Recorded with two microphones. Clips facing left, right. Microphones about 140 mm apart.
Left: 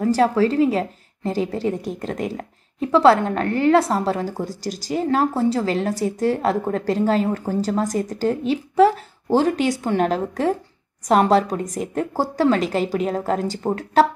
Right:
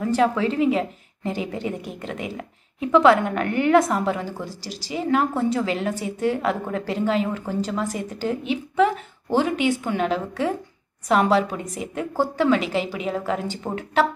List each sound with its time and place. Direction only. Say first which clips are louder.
0.0 s a woman's voice: left 3 dB; 35° left (ahead or behind)